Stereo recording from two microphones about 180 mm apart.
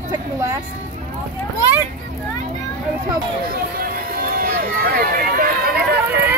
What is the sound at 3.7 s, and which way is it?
Run, 55° right (ahead or behind).